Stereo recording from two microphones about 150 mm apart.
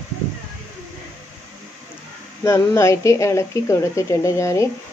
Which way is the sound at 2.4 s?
20° left (ahead or behind).